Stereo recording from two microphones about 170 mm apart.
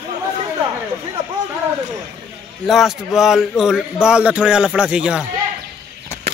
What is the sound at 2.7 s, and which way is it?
Speech, centre (ahead or behind).